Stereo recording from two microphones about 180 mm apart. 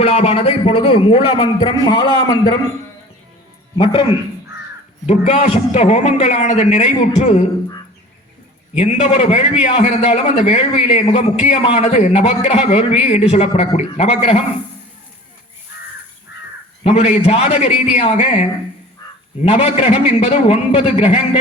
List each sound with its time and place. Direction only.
0.0 s a man's voice: 35° left (ahead or behind)
5.0 s a man's voice: 40° left (ahead or behind)
8.8 s a man's voice: 35° left (ahead or behind)
16.8 s a man's voice: 35° left (ahead or behind)